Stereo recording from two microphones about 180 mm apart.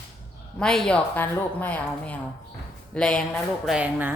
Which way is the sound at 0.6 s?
5° left (ahead or behind).